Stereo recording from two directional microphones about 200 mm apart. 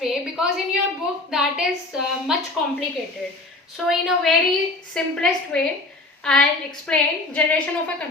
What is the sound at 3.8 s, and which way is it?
A woman's voice, centre (ahead or behind).